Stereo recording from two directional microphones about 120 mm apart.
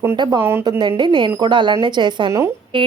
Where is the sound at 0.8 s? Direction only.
40° right (ahead or behind).